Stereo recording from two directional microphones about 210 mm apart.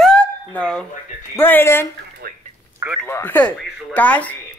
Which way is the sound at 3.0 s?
10° left (ahead or behind).